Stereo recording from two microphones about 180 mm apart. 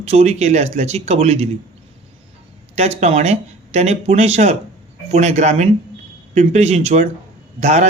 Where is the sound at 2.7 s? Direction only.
40° right (ahead or behind).